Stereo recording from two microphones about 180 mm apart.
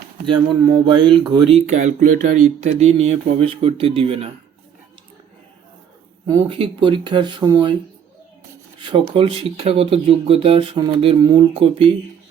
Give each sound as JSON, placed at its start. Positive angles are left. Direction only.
{"t": 0.3, "sound": "speech", "side_deg": -25}
{"t": 6.2, "sound": "speech", "side_deg": -30}
{"t": 8.8, "sound": "speech", "side_deg": -30}